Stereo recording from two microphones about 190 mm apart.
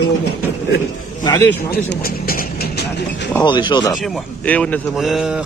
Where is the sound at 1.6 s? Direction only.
50° left (ahead or behind).